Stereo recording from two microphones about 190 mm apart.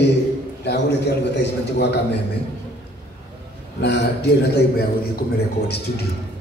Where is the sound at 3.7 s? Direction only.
65° left (ahead or behind).